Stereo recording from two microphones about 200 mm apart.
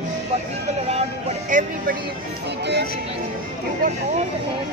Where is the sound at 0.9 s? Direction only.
35° right (ahead or behind).